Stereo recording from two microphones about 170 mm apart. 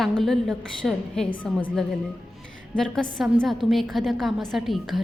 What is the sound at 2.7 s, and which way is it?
A woman's voice, 5° left (ahead or behind).